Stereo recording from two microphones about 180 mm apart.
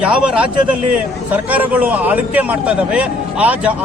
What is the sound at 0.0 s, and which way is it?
A man's voice, 5° right (ahead or behind).